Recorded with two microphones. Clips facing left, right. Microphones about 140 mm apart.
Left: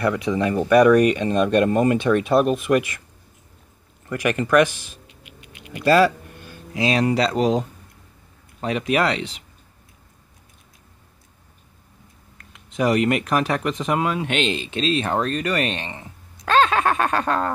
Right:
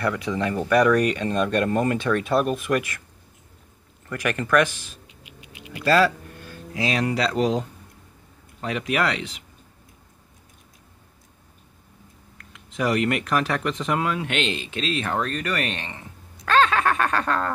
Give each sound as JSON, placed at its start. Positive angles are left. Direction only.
{"t": 0.0, "sound": "speech", "side_deg": 20}
{"t": 4.1, "sound": "speech", "side_deg": 15}
{"t": 12.4, "sound": "speech", "side_deg": 25}
{"t": 16.4, "sound": "a sound", "side_deg": 20}